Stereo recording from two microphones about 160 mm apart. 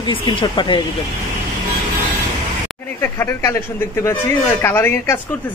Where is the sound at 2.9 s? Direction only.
15° left (ahead or behind).